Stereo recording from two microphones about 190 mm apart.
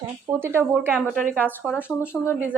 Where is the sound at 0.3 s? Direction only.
10° right (ahead or behind).